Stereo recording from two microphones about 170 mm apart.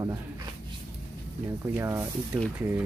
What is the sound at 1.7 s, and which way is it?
Speech, 15° right (ahead or behind).